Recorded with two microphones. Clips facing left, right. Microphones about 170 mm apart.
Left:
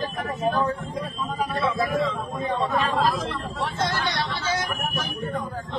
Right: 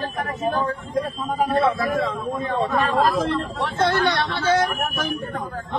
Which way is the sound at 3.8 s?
60° right (ahead or behind).